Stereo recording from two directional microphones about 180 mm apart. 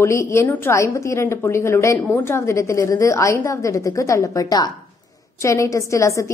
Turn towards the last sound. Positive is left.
turn(degrees=15)  # may be behind; listen again after turning